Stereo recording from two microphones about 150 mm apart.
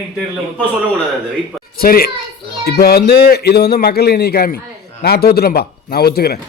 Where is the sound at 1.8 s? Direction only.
80° left.